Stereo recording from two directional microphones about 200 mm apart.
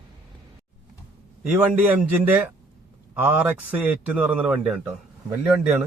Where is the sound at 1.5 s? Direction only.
5° right (ahead or behind).